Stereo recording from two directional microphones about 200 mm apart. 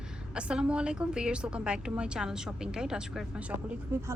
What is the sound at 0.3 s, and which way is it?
Speech, 5° right (ahead or behind).